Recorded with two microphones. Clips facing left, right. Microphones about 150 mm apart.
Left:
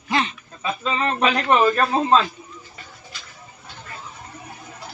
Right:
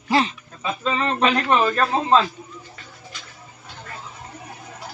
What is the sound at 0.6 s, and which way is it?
A man's voice, 5° left (ahead or behind).